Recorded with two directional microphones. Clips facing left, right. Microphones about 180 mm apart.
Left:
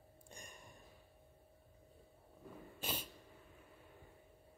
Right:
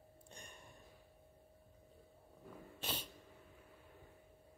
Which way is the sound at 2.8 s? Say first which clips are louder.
Left 1 dB; 10° left (ahead or behind).